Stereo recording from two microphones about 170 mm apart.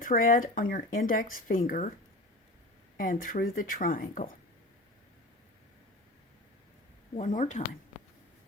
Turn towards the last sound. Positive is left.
turn(degrees=45)  # may be behind; listen again after turning